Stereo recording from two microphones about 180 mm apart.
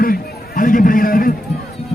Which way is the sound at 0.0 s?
50° left (ahead or behind).